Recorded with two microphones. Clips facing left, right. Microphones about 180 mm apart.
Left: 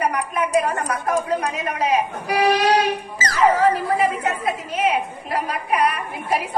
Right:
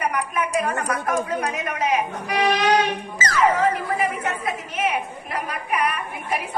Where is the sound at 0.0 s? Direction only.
35° left (ahead or behind).